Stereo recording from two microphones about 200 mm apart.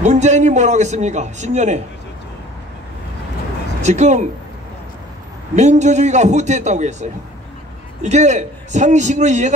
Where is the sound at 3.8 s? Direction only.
35° right (ahead or behind).